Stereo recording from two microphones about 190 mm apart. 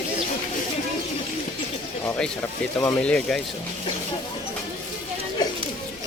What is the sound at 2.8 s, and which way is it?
Speech, 10° left (ahead or behind).